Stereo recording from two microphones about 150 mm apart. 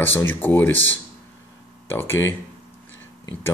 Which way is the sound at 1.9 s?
15° left (ahead or behind).